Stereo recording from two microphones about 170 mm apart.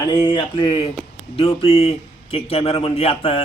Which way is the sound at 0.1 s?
25° left (ahead or behind).